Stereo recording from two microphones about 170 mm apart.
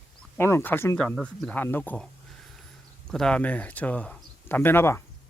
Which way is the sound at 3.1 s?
5° left (ahead or behind).